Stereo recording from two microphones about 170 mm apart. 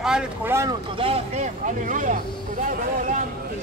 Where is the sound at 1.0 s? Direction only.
35° right (ahead or behind).